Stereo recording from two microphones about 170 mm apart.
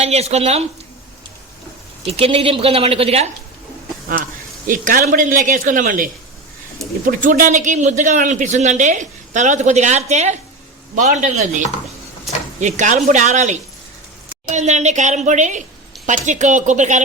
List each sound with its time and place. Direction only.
0.0 s a woman's voice: 40° right (ahead or behind)
2.0 s a woman's voice: 35° right (ahead or behind)
4.2 s a man's voice: 50° right (ahead or behind)